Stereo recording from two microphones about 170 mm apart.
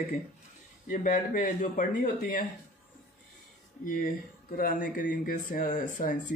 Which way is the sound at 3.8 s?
55° left (ahead or behind).